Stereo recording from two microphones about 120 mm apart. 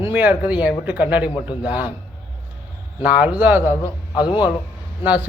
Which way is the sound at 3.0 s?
10° right (ahead or behind).